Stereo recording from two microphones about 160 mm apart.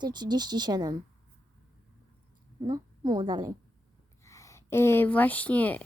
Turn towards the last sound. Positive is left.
turn(degrees=10)  # may be behind; listen again after turning